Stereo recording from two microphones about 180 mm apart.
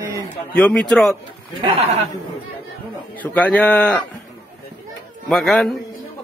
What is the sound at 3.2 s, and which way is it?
Speech, 10° left (ahead or behind).